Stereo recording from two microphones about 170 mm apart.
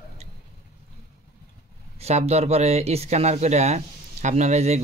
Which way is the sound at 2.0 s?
40° right (ahead or behind).